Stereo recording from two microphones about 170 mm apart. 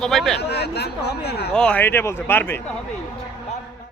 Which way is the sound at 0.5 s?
75° left (ahead or behind).